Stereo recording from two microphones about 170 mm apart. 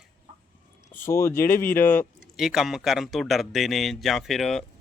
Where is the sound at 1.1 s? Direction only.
15° left (ahead or behind).